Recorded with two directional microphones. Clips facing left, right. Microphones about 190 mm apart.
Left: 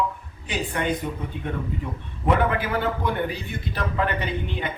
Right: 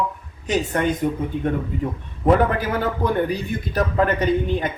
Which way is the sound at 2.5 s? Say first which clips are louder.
Right 2 dB; 40° right (ahead or behind).